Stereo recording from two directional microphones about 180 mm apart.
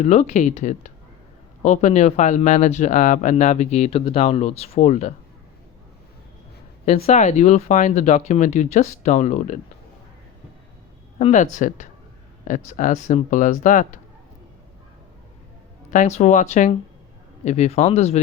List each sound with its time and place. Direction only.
0.0 s speech: 40° left (ahead or behind)
6.8 s speech: 35° left (ahead or behind)
11.2 s speech: 40° left (ahead or behind)
12.5 s speech: 45° left (ahead or behind)
15.9 s speech: 40° left (ahead or behind)